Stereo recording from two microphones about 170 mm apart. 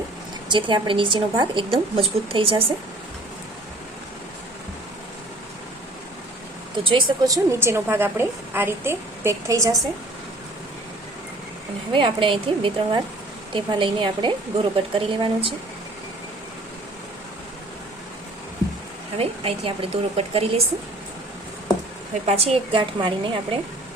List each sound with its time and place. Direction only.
0.4 s a woman's voice: 25° right (ahead or behind)
6.7 s a woman's voice: 30° right (ahead or behind)
11.9 s a woman's voice: 30° right (ahead or behind)
19.1 s a woman's voice: 35° right (ahead or behind)
22.3 s a woman's voice: 35° right (ahead or behind)